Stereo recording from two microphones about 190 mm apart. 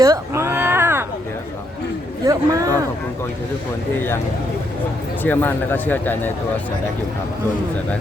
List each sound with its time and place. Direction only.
0.0 s cat: 15° right (ahead or behind)
2.2 s speech: 15° right (ahead or behind)
5.2 s speech: 10° left (ahead or behind)